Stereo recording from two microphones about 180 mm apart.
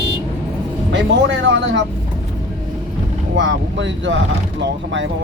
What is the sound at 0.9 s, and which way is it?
Speech, 90° right.